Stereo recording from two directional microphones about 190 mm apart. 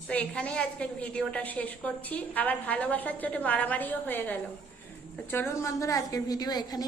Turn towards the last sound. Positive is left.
turn(degrees=20)  # may be behind; listen again after turning